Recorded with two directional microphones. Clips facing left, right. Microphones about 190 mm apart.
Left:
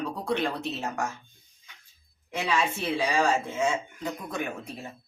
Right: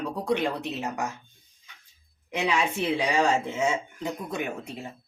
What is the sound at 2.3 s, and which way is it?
Speech, 15° right (ahead or behind).